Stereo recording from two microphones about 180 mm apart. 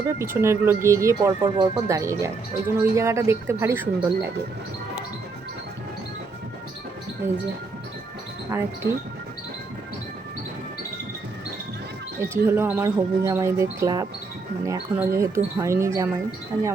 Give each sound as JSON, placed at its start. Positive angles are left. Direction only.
{"t": 0.2, "sound": "speech", "side_deg": -15}
{"t": 8.4, "sound": "speech", "side_deg": -15}
{"t": 12.3, "sound": "speech", "side_deg": -15}